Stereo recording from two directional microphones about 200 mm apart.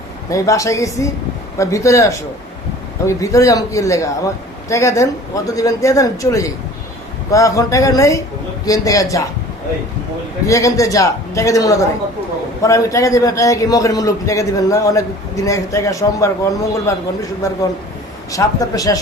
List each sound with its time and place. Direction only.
0.3 s a man's voice: 15° left (ahead or behind)
10.4 s a man's voice: 15° left (ahead or behind)